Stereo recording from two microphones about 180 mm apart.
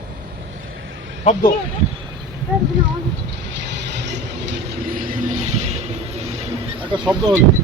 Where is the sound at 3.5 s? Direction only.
75° right (ahead or behind); by 5.8 s 40° right (ahead or behind).